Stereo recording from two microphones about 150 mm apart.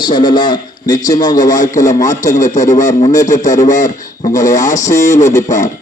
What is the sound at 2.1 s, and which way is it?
Speech, 55° left (ahead or behind).